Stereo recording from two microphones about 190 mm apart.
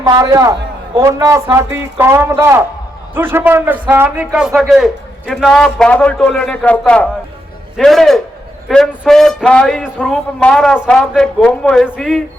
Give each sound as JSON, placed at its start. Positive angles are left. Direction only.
{"t": 0.0, "sound": "a man's voice", "side_deg": -20}